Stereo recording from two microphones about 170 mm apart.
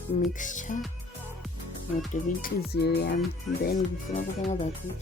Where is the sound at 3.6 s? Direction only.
65° left (ahead or behind).